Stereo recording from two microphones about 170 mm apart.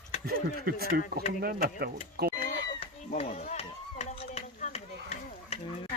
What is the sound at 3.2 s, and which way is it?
Run, 40° left (ahead or behind).